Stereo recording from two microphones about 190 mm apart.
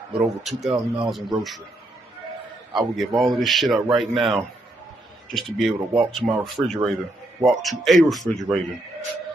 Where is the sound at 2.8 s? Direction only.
Centre (ahead or behind).